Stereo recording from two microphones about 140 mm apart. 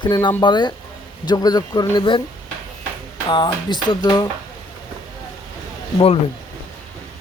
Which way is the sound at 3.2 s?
35° left (ahead or behind).